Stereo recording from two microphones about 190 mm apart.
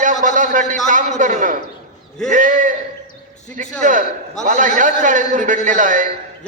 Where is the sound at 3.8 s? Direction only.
45° right (ahead or behind).